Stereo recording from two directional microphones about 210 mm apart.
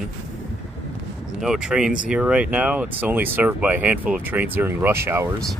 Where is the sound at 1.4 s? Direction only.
5° right (ahead or behind).